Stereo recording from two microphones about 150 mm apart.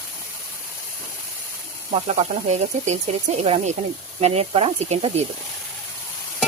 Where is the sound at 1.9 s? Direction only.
45° right (ahead or behind).